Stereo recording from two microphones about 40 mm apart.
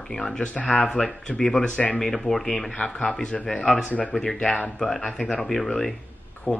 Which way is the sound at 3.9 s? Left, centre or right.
Left.